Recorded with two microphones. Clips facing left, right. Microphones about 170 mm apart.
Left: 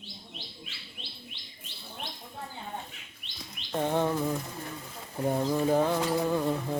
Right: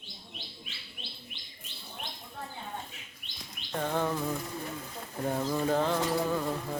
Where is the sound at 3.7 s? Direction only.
20° left (ahead or behind).